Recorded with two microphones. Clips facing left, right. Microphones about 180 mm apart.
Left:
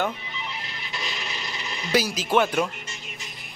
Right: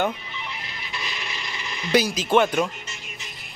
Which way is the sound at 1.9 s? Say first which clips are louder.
Right 3 dB; 5° left (ahead or behind).